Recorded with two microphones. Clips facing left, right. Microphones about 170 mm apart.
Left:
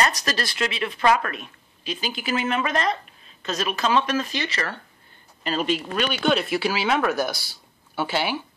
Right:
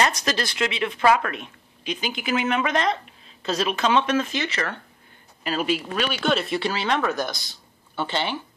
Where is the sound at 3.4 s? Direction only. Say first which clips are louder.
Right 2 dB; 30° right (ahead or behind).